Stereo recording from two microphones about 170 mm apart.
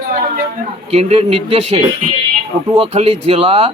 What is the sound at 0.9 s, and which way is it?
Speech, 40° right (ahead or behind).